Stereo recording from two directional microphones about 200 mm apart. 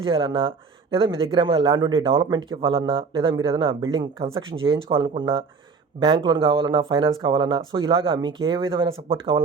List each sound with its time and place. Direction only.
0.0 s speech: 25° right (ahead or behind)